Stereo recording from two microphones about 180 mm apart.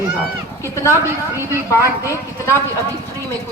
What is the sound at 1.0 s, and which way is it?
Speech, 15° right (ahead or behind).